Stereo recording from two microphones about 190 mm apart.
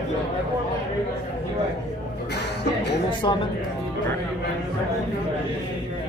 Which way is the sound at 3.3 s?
25° left (ahead or behind).